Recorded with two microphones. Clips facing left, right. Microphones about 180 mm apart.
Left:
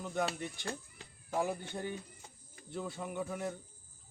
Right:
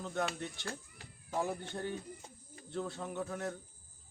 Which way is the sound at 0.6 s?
25° left (ahead or behind).